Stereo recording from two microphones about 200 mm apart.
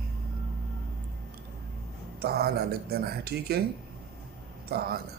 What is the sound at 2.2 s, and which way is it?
Speech, 50° right (ahead or behind).